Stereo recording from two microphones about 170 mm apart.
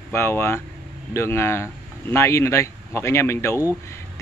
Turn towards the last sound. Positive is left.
turn(degrees=15)  # may be behind; listen again after turning